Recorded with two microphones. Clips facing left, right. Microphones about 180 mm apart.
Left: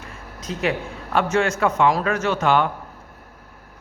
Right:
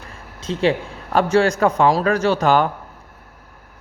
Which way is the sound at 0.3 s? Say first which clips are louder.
Right 5 dB; 30° right (ahead or behind).